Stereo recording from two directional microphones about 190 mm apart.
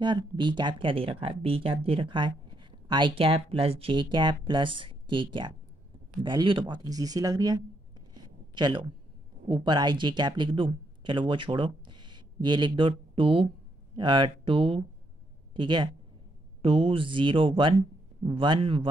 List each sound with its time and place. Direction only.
0.0 s speech: 25° right (ahead or behind)